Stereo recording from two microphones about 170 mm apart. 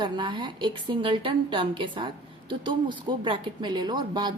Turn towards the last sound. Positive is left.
turn(degrees=-25)  # may be behind; listen again after turning